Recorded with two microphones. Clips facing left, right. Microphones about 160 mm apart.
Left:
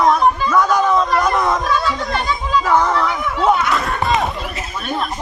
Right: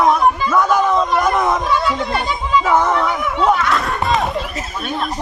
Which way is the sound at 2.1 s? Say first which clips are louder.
Right 1 dB; 20° right (ahead or behind).